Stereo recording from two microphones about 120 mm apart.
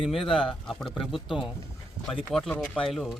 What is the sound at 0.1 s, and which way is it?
Speech, centre (ahead or behind).